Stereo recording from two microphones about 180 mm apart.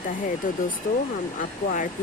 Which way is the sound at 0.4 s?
45° left (ahead or behind).